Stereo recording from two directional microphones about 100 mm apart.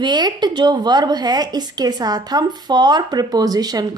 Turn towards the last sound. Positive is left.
turn(degrees=-40)  # may be behind; listen again after turning